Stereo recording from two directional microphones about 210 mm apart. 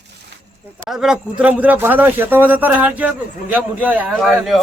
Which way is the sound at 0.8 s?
Centre (ahead or behind).